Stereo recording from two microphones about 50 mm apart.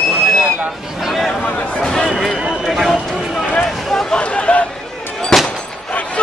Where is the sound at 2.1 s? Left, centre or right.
Centre.